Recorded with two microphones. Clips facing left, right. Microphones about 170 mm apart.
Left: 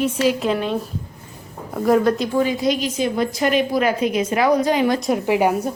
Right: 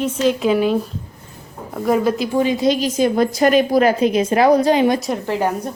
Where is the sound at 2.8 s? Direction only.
40° right (ahead or behind).